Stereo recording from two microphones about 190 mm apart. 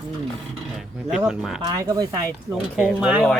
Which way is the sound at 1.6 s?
20° right (ahead or behind).